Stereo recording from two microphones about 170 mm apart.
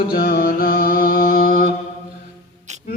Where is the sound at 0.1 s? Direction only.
60° left (ahead or behind).